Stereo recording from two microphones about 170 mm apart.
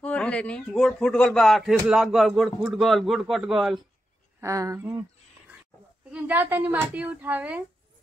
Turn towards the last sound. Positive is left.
turn(degrees=-10)  # may be behind; listen again after turning